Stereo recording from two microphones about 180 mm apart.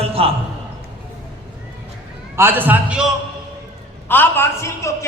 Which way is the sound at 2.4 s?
10° right (ahead or behind).